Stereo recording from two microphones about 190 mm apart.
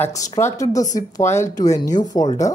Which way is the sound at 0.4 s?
15° left (ahead or behind).